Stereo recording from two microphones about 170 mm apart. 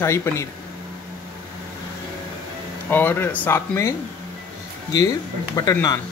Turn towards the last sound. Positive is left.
turn(degrees=20)  # may be behind; listen again after turning